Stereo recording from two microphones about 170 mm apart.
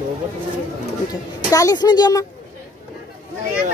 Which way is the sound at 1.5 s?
20° left (ahead or behind).